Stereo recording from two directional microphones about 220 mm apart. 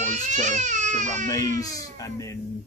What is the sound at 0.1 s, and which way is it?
Baby cry, 35° right (ahead or behind).